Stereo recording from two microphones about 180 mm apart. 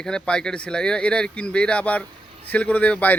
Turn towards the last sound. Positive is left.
turn(degrees=10)  # may be behind; listen again after turning